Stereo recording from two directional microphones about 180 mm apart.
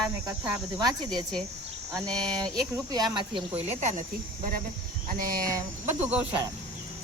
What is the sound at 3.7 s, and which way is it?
Speech, 40° right (ahead or behind).